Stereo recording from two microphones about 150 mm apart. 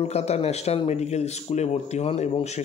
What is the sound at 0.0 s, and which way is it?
A man's voice, 45° left (ahead or behind).